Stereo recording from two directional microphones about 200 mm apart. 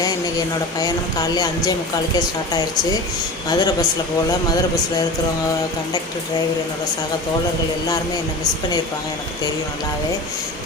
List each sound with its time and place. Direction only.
0.0 s speech: 20° left (ahead or behind)